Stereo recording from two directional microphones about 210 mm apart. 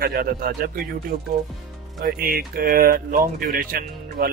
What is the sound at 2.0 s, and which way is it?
Speech, 45° right (ahead or behind).